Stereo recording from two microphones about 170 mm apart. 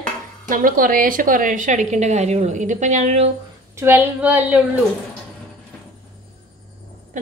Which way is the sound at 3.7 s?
15° right (ahead or behind).